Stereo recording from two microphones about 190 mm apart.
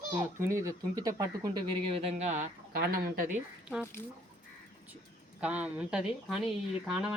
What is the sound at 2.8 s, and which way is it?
Speech, 55° right (ahead or behind).